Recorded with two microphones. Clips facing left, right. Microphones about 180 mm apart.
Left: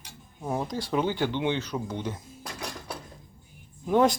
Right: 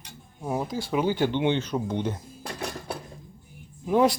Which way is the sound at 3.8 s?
Centre (ahead or behind).